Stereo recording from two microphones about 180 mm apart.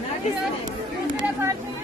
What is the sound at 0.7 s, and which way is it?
Chatter, 20° right (ahead or behind).